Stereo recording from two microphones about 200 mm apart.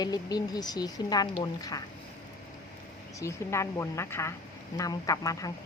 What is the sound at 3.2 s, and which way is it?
A woman's voice, 15° left (ahead or behind).